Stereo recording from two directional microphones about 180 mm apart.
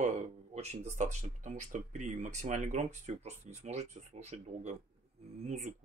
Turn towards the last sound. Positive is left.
turn(degrees=-40)  # may be behind; listen again after turning